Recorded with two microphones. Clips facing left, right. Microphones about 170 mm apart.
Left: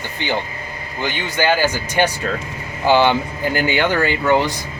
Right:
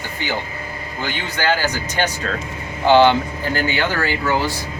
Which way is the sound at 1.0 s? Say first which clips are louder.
Left 3 dB; 15° left (ahead or behind).